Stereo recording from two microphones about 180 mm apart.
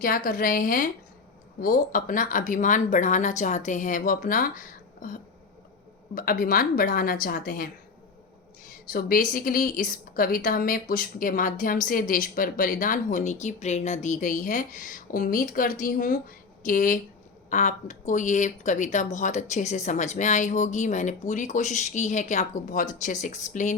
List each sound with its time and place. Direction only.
0.0 s a woman's voice: 50° left (ahead or behind)
8.9 s a woman's voice: 50° left (ahead or behind)